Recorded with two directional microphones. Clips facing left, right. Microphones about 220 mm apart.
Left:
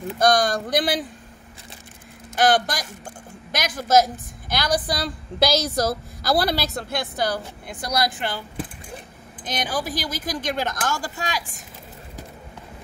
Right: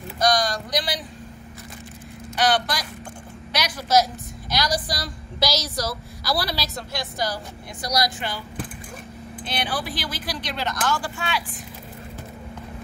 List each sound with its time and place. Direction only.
0.2 s speech: 55° left (ahead or behind)
2.3 s a woman's voice: 50° left (ahead or behind)
9.4 s speech: 45° left (ahead or behind)